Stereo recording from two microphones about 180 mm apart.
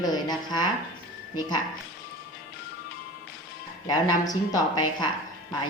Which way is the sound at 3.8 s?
20° left (ahead or behind).